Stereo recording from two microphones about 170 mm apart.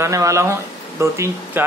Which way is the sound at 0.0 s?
20° right (ahead or behind).